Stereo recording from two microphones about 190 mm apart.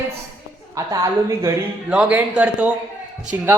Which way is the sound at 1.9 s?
5° right (ahead or behind).